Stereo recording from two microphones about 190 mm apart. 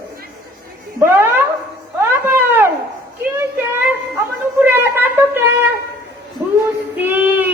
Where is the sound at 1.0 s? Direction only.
10° right (ahead or behind).